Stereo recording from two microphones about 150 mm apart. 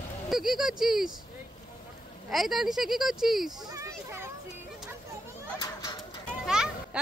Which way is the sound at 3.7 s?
20° right (ahead or behind).